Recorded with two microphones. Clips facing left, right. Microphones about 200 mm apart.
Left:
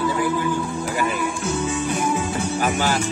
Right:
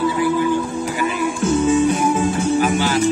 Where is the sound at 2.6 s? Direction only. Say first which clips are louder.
Right 3 dB; 45° left (ahead or behind).